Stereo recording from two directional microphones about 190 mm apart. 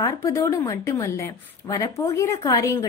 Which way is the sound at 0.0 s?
15° left (ahead or behind).